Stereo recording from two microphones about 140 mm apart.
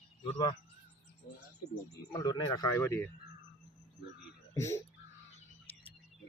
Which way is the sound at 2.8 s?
15° left (ahead or behind).